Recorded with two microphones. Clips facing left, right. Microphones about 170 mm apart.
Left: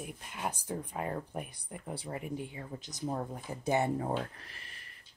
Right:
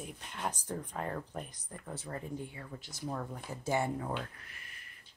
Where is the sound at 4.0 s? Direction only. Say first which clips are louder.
Left 4 dB; 35° left (ahead or behind).